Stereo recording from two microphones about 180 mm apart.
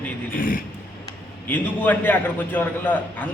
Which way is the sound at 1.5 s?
10° left (ahead or behind).